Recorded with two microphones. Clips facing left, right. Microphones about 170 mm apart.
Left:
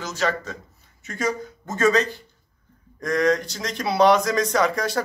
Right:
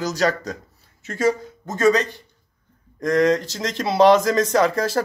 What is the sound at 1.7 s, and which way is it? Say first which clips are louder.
Speech: right 2 dB; 15° right (ahead or behind).